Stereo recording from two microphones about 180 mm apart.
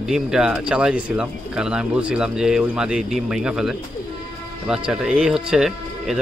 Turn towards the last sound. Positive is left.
turn(degrees=0)  # may be behind; listen again after turning